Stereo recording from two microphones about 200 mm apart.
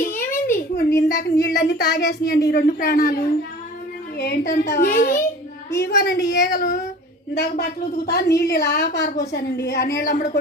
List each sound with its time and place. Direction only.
0.0 s a child's voice: 40° left (ahead or behind)
4.2 s a woman's voice: 55° left (ahead or behind)